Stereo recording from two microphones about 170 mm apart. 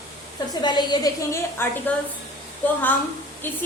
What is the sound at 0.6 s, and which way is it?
Speech, 25° left (ahead or behind).